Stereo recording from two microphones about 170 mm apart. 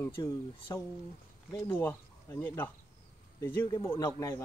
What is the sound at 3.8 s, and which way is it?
Speech, 15° left (ahead or behind).